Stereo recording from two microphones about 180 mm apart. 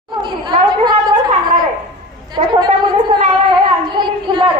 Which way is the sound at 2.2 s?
25° right (ahead or behind).